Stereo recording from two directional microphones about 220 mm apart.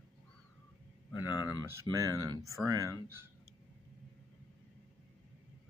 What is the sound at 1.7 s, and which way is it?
Speech, 15° right (ahead or behind).